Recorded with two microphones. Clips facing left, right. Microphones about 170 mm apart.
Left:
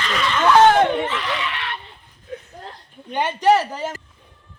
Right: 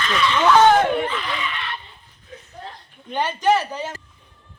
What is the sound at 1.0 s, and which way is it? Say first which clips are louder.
Speech: left 1 dB; 75° left (ahead or behind).